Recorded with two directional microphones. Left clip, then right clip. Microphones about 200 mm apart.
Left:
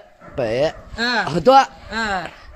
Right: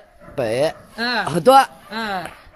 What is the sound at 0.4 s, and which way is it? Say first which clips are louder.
Speech: even; 5° right (ahead or behind).